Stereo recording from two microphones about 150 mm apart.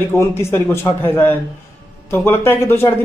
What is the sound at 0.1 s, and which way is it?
A man's voice, 15° left (ahead or behind).